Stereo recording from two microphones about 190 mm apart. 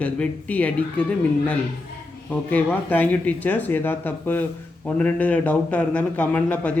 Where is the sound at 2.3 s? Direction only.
10° left (ahead or behind).